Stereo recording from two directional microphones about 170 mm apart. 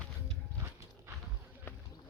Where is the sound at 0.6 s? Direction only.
15° right (ahead or behind).